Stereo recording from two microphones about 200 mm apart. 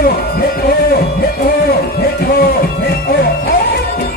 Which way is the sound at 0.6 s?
50° left (ahead or behind).